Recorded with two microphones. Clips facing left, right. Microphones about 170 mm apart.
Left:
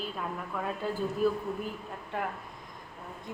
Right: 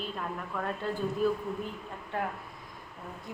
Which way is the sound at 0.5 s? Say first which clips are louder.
Even; centre (ahead or behind).